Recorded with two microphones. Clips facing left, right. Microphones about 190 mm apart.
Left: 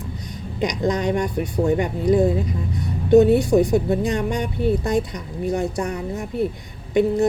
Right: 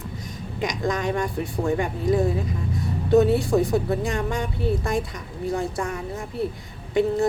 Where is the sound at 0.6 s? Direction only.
20° left (ahead or behind).